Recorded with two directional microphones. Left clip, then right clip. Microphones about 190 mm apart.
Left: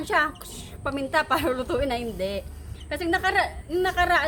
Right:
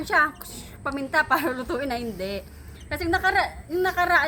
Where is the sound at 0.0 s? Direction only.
10° left (ahead or behind).